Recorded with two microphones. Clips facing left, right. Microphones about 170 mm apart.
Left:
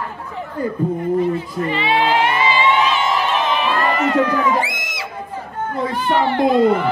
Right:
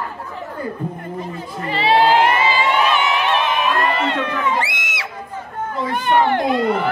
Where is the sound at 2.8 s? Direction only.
60° right (ahead or behind).